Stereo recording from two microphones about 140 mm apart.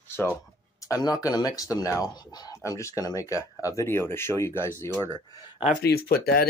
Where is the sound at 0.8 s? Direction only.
25° left (ahead or behind).